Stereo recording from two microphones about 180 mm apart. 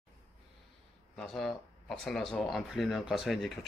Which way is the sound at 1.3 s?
Centre (ahead or behind).